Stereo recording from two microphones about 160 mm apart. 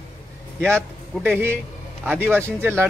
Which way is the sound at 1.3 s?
15° right (ahead or behind).